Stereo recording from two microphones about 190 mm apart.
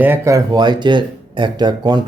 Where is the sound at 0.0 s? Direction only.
15° right (ahead or behind).